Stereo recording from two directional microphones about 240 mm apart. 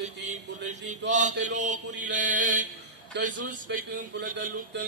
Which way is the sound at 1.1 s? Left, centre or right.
Right.